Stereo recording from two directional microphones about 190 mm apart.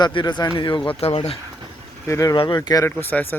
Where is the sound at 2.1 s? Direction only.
15° left (ahead or behind).